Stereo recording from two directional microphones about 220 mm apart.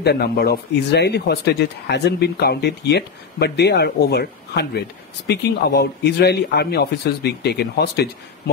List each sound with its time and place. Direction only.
0.0 s speech: 45° left (ahead or behind)